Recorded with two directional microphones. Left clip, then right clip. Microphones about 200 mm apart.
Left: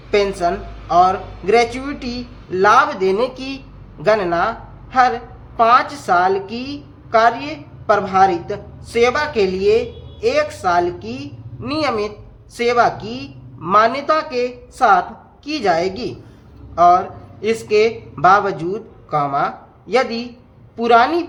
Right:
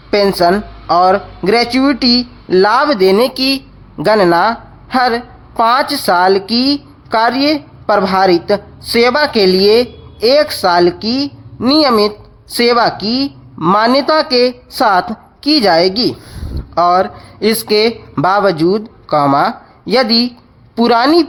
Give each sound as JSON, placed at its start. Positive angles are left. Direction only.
{"t": 0.1, "sound": "a woman's voice", "side_deg": -45}
{"t": 3.3, "sound": "speech", "side_deg": -20}
{"t": 3.9, "sound": "a woman's voice", "side_deg": -45}